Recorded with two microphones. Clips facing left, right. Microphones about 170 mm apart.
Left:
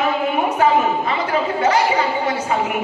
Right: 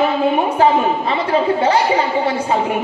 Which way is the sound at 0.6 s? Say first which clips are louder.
Even; 30° right (ahead or behind).